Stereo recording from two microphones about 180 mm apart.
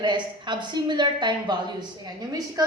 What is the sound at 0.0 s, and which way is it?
A woman's voice, 25° right (ahead or behind).